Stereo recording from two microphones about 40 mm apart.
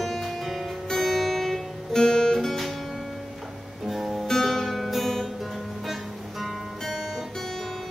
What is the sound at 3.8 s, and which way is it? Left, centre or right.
Guitar, centre.